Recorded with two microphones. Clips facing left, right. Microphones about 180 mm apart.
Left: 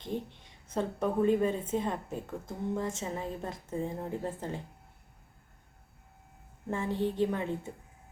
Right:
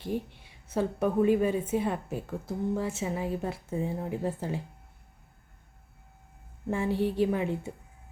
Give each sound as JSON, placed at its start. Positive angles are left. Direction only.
{"t": 0.0, "sound": "a woman's voice", "side_deg": -10}
{"t": 6.7, "sound": "a woman's voice", "side_deg": -10}